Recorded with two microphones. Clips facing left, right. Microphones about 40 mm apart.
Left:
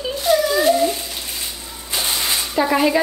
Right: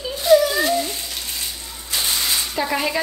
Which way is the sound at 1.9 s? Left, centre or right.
Centre.